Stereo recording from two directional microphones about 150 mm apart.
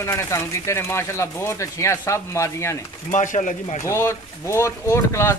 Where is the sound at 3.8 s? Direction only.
20° left (ahead or behind).